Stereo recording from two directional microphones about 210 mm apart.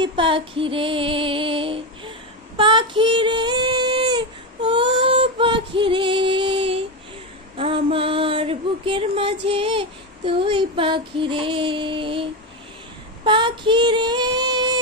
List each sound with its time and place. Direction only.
0.0 s female singing: 25° right (ahead or behind)
7.5 s a sound: 25° right (ahead or behind)
13.2 s female singing: 20° right (ahead or behind)